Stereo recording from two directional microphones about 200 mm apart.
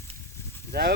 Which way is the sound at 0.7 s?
55° right (ahead or behind).